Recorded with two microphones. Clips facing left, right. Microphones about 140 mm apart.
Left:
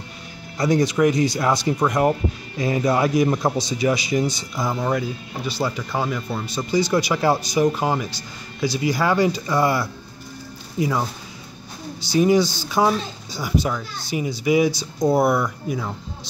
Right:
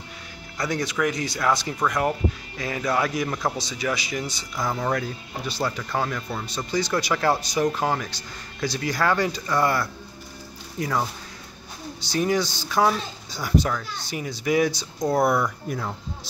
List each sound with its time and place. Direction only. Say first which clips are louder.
0.6 s a man's voice: left 7 dB; 15° left (ahead or behind); by 15.9 s centre (ahead or behind)